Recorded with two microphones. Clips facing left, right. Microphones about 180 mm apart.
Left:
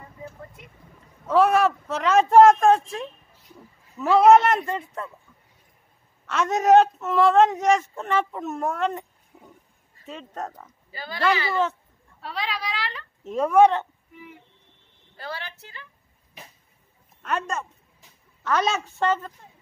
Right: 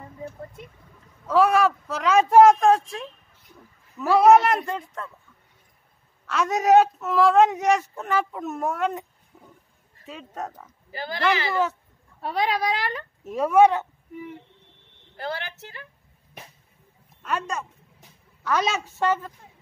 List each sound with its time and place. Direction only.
1.3 s speech: centre (ahead or behind)
6.2 s speech: centre (ahead or behind)
9.3 s a sound: 15° left (ahead or behind)
10.0 s a woman's voice: 5° right (ahead or behind)
12.2 s speech: 50° right (ahead or behind)
13.2 s a woman's voice: 5° right (ahead or behind)
15.1 s a woman's voice: 55° right (ahead or behind)
17.2 s a woman's voice: centre (ahead or behind)